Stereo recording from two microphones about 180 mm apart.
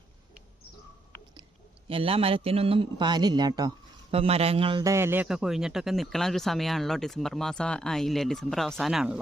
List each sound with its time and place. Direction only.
1.9 s a man's voice: 30° right (ahead or behind)
4.1 s a man's voice: 35° right (ahead or behind); by 9.2 s 5° right (ahead or behind)